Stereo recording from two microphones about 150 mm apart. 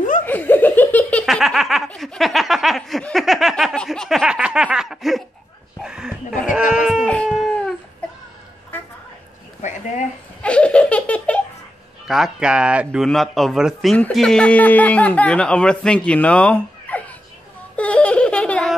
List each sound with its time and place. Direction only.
0.2 s laughter: 10° left (ahead or behind)
1.2 s snicker: centre (ahead or behind)
5.8 s a sound: 5° right (ahead or behind)
6.7 s livestock: 5° right (ahead or behind)
7.2 s dog: centre (ahead or behind)
9.6 s a sound: 55° left (ahead or behind)
10.4 s laughter: 5° left (ahead or behind)
12.1 s speech: 5° right (ahead or behind)
17.7 s giggle: 10° left (ahead or behind)